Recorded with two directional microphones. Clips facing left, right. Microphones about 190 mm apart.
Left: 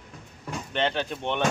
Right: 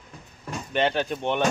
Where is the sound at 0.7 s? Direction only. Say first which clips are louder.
Right 3 dB; 10° right (ahead or behind).